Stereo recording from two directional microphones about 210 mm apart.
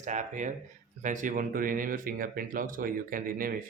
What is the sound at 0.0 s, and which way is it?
Speech, 35° right (ahead or behind).